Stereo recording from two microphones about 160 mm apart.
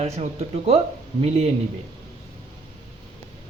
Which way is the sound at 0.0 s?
40° right (ahead or behind).